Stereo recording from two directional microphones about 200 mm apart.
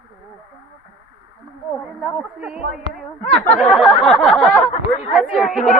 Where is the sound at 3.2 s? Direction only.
30° left (ahead or behind).